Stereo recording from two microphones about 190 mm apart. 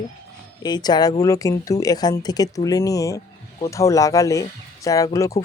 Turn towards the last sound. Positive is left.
turn(degrees=15)  # may be behind; listen again after turning